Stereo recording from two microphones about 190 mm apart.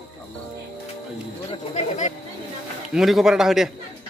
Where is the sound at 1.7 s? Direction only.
40° left (ahead or behind).